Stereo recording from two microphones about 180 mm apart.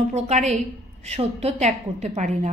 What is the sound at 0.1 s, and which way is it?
A woman's voice, 40° right (ahead or behind).